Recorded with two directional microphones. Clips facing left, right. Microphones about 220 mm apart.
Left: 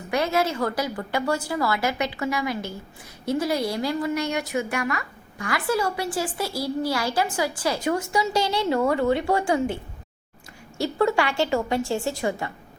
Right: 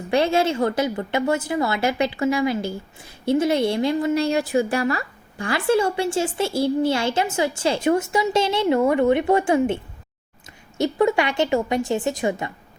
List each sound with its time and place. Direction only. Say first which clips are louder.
0.1 s a woman's voice: right 4 dB; 30° right (ahead or behind)